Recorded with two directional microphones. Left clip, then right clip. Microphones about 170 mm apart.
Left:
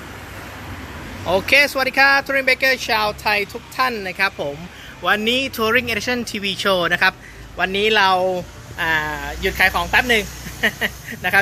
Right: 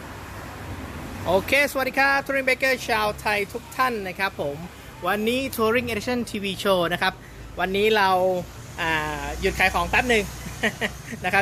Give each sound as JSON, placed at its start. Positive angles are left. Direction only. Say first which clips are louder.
{"t": 1.2, "sound": "speech", "louder": "left 5 dB", "side_deg": 0}